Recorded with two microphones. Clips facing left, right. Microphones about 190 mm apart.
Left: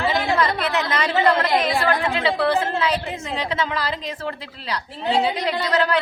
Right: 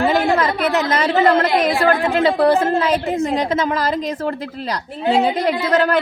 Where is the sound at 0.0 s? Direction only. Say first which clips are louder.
Right 5 dB; 50° right (ahead or behind).